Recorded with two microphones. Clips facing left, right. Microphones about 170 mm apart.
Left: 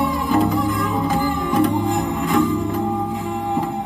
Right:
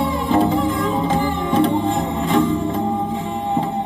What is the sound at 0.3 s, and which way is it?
Music, 25° right (ahead or behind).